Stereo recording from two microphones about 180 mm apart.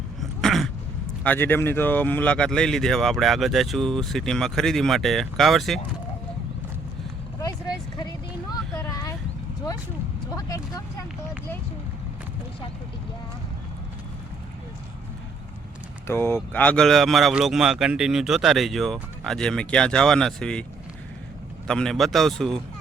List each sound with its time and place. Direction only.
0.2 s a sound: centre (ahead or behind)
1.2 s speech: 10° left (ahead or behind)
7.9 s a sound: 20° left (ahead or behind)
10.3 s speech: 20° left (ahead or behind)
16.0 s speech: 15° left (ahead or behind)
21.7 s speech: 5° left (ahead or behind)